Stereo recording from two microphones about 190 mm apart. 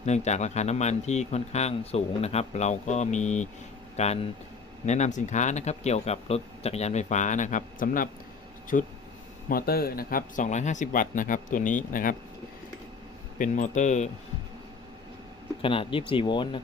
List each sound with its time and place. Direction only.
0.0 s speech: 35° left (ahead or behind)
13.4 s speech: 40° left (ahead or behind)
15.6 s speech: 25° left (ahead or behind)